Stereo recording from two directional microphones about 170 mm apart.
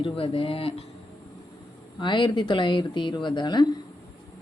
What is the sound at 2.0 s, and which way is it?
Speech, 30° left (ahead or behind).